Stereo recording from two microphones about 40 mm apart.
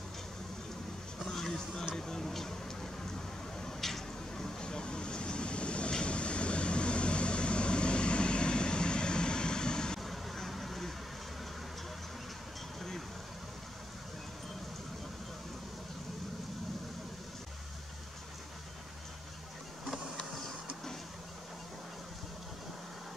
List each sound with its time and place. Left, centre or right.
1.2 s a sound: centre
4.6 s vehicle: centre
10.0 s vehicle: centre